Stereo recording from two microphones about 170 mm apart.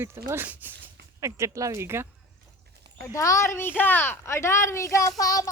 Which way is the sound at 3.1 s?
20° left (ahead or behind).